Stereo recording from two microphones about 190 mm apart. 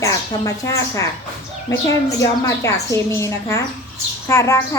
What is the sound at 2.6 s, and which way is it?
Speech, 15° left (ahead or behind).